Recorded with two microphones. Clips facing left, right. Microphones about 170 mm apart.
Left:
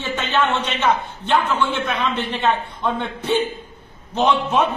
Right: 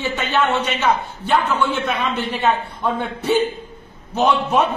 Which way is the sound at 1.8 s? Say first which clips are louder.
Right 1 dB; 5° right (ahead or behind).